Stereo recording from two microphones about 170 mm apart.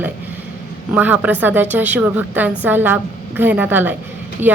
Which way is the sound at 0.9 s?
10° right (ahead or behind).